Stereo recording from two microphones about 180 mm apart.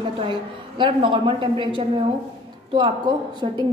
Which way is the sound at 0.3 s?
25° right (ahead or behind).